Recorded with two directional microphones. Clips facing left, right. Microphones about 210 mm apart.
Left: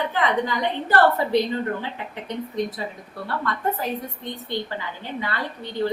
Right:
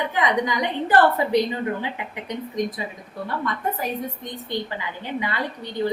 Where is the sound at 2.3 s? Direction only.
15° right (ahead or behind).